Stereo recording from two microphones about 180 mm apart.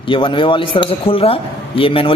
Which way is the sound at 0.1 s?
30° left (ahead or behind).